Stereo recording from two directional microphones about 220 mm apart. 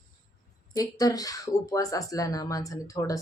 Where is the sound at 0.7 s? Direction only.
15° left (ahead or behind).